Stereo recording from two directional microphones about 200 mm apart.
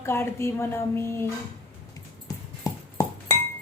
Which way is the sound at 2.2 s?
15° left (ahead or behind).